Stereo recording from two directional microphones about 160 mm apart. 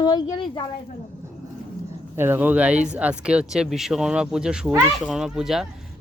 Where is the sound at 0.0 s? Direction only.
25° left (ahead or behind).